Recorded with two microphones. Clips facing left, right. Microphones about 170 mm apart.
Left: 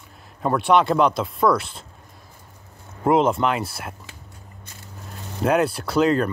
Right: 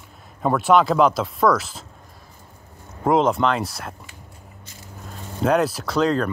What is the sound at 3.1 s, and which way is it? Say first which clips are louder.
Speech: even; centre (ahead or behind).